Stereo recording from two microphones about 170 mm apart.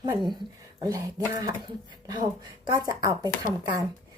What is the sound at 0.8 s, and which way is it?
Speech, 20° right (ahead or behind).